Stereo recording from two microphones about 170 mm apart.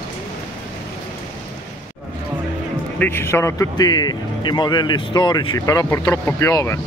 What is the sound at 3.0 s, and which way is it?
A man's voice, 15° left (ahead or behind).